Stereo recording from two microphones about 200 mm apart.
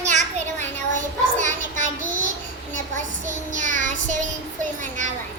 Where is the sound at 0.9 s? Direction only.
40° right (ahead or behind).